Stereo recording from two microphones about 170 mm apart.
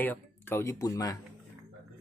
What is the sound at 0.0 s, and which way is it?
Speech, 10° left (ahead or behind).